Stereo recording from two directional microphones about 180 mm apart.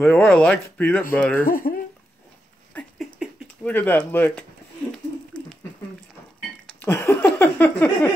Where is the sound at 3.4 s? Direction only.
10° left (ahead or behind).